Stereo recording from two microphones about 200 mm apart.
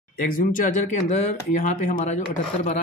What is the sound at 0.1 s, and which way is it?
Speech, 45° left (ahead or behind).